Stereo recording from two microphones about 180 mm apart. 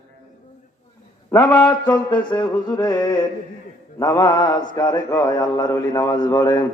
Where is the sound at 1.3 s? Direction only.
20° left (ahead or behind).